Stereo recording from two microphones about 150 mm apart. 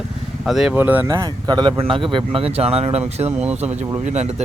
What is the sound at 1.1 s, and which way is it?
Speech, 30° right (ahead or behind).